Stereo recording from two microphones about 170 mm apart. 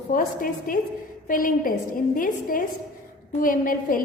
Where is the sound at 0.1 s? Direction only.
55° left (ahead or behind).